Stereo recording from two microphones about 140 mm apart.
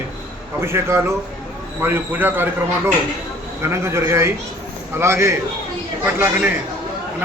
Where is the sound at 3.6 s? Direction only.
20° right (ahead or behind).